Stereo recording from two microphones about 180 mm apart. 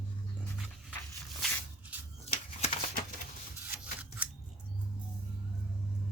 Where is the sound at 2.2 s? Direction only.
35° left (ahead or behind).